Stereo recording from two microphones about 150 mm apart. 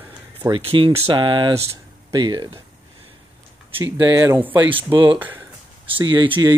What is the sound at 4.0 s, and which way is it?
Speech, 20° right (ahead or behind).